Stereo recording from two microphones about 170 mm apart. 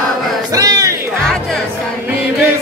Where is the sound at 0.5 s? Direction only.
20° right (ahead or behind).